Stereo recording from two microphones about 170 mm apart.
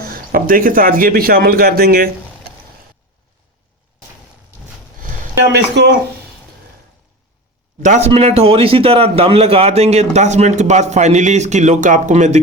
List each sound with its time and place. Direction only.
0.0 s speech: 60° right (ahead or behind)
5.5 s speech: 90° right
7.8 s a man's voice: 45° right (ahead or behind)